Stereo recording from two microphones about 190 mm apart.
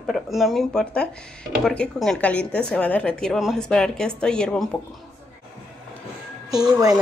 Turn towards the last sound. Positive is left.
turn(degrees=-20)  # may be behind; listen again after turning